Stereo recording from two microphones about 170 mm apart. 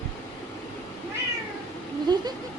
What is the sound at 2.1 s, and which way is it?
Vehicle, 25° right (ahead or behind).